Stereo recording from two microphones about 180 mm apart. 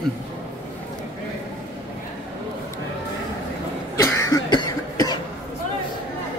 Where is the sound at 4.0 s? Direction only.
15° left (ahead or behind).